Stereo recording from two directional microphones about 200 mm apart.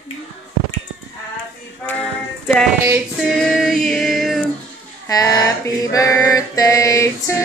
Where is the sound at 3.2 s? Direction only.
Centre (ahead or behind).